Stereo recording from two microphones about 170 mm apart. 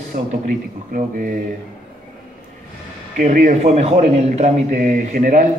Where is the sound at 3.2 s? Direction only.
50° right (ahead or behind).